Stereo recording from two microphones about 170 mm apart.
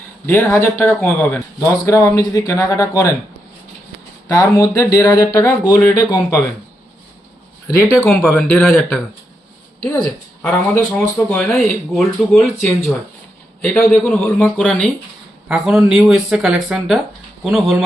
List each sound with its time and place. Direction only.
0.3 s speech: 15° left (ahead or behind)
4.3 s speech: 20° left (ahead or behind)
7.9 s speech: centre (ahead or behind)
10.9 s speech: 5° left (ahead or behind)